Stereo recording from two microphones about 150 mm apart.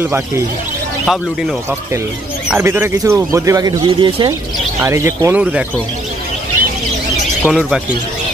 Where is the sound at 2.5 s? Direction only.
15° right (ahead or behind).